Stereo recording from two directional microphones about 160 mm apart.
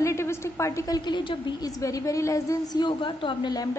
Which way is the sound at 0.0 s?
15° left (ahead or behind).